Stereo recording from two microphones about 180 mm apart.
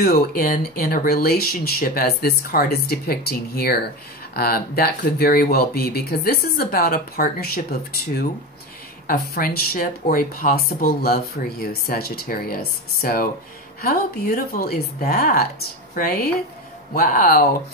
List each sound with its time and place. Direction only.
0.0 s speech: 55° left (ahead or behind)
9.0 s speech: 55° left (ahead or behind)